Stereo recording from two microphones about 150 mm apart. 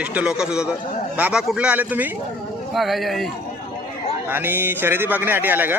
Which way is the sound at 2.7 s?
Centre (ahead or behind).